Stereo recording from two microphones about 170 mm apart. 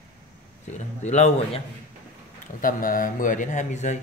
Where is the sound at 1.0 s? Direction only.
40° left (ahead or behind).